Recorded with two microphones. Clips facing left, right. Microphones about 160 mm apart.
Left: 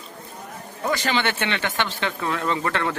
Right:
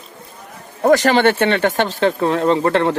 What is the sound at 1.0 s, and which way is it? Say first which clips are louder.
Speech: right 10 dB; 45° right (ahead or behind).